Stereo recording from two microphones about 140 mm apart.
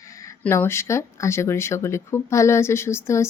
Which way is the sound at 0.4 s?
15° left (ahead or behind).